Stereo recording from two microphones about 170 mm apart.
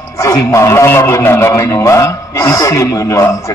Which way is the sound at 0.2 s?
20° left (ahead or behind).